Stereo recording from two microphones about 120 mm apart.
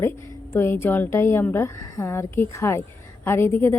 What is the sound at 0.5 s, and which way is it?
A woman's voice, 20° left (ahead or behind).